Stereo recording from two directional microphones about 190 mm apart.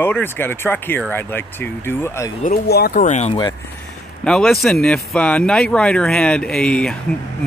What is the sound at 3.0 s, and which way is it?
Speech, 35° left (ahead or behind).